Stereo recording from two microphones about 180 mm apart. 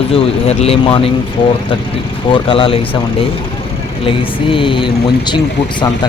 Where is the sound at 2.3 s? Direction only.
30° left (ahead or behind).